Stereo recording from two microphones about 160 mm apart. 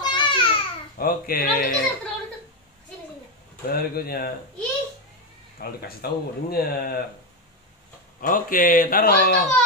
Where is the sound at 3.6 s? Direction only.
70° left (ahead or behind).